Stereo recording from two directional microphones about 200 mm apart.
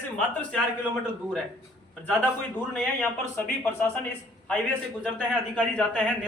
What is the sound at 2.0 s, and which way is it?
A man's voice, 10° left (ahead or behind).